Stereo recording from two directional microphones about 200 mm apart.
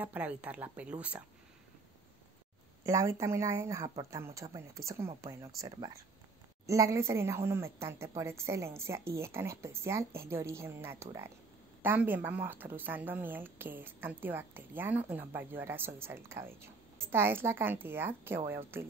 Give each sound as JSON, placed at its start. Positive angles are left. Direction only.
{"t": 0.0, "sound": "a woman's voice", "side_deg": -10}
{"t": 2.8, "sound": "a woman's voice", "side_deg": -15}
{"t": 6.6, "sound": "a woman's voice", "side_deg": -15}